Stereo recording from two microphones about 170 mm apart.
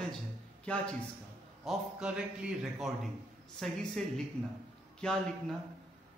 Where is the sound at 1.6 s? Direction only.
5° right (ahead or behind).